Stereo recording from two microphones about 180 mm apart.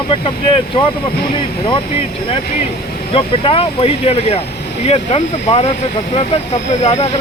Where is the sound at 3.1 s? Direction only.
30° left (ahead or behind).